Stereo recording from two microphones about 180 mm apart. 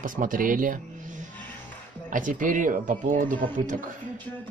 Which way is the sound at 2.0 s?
45° right (ahead or behind).